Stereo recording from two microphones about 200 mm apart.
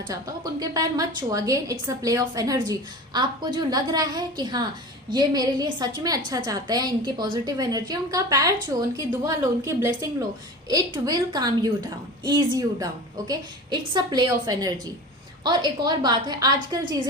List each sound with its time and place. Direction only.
0.1 s a woman's voice: 20° right (ahead or behind)